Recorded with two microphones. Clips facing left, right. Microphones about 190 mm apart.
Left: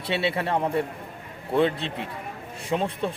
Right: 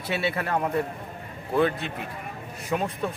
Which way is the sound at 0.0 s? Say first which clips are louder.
Left 2 dB; 30° left (ahead or behind).